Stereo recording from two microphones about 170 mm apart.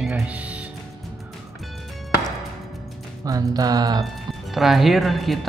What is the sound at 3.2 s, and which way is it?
Speech, 20° right (ahead or behind).